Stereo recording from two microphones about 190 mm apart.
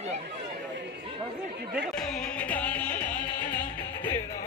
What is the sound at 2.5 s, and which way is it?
Music, 5° left (ahead or behind).